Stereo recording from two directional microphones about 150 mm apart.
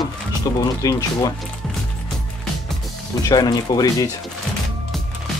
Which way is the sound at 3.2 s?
25° left (ahead or behind).